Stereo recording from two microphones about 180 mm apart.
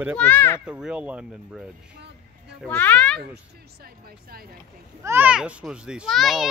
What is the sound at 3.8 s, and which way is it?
Speech, 55° right (ahead or behind).